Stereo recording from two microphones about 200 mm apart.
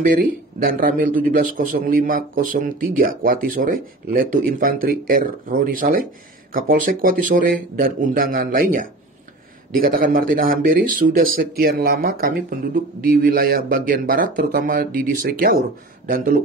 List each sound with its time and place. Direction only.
0.0 s a man's voice: 45° right (ahead or behind)